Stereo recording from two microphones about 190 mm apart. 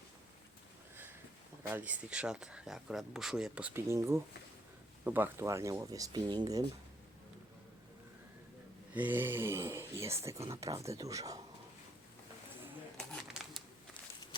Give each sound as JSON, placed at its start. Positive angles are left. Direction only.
{"t": 1.7, "sound": "speech", "side_deg": -10}
{"t": 8.9, "sound": "speech", "side_deg": -10}
{"t": 13.1, "sound": "crumpling", "side_deg": 0}